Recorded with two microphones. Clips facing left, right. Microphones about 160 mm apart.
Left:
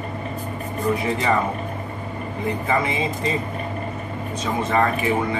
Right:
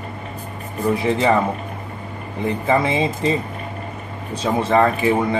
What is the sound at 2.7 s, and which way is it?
Speech, 30° right (ahead or behind).